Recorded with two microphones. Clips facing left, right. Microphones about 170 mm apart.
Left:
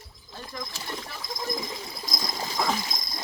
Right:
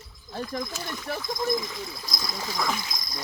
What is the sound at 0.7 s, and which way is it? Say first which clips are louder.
Speech: right 5 dB; 30° left (ahead or behind).